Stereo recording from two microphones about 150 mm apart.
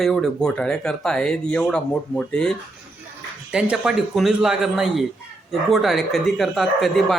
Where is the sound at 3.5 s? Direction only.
5° right (ahead or behind).